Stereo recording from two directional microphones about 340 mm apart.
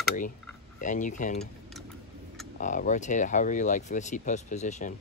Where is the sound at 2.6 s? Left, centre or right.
Left.